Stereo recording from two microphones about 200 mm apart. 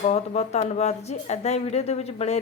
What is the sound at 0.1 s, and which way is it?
A woman's voice, 35° left (ahead or behind).